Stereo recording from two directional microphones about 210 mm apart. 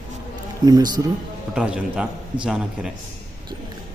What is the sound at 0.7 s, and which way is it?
Speech, 20° right (ahead or behind).